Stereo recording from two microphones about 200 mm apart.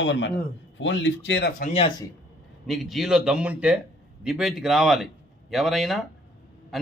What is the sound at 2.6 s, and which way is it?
A man's voice, centre (ahead or behind).